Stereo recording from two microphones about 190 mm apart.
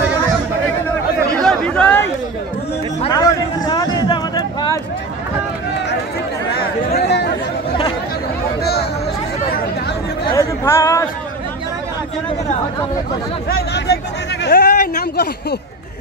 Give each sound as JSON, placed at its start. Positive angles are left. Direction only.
{"t": 1.3, "sound": "chatter", "side_deg": 5}
{"t": 3.1, "sound": "a sound", "side_deg": 20}
{"t": 7.1, "sound": "chatter", "side_deg": 60}
{"t": 10.3, "sound": "chatter", "side_deg": 15}
{"t": 13.5, "sound": "speech", "side_deg": 60}
{"t": 14.4, "sound": "a sound", "side_deg": 55}